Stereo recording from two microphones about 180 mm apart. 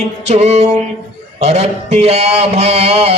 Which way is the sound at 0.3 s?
40° right (ahead or behind).